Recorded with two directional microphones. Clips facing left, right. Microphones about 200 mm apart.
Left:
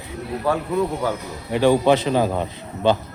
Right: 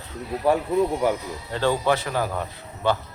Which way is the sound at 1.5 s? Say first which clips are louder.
Left 6 dB; 15° left (ahead or behind).